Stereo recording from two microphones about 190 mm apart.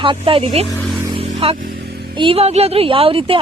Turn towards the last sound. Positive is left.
turn(degrees=-30)  # may be behind; listen again after turning